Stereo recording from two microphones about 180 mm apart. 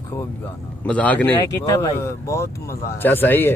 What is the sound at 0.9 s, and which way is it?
Speech, 10° left (ahead or behind).